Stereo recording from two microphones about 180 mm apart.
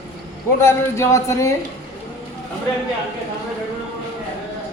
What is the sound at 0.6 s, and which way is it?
Speech, 15° left (ahead or behind).